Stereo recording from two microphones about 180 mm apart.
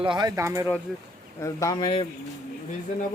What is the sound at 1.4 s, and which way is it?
Speech, 20° left (ahead or behind).